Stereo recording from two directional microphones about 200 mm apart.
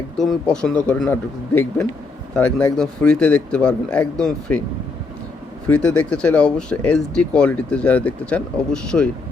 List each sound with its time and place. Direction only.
0.2 s speech: 5° left (ahead or behind)
5.6 s speech: 5° left (ahead or behind)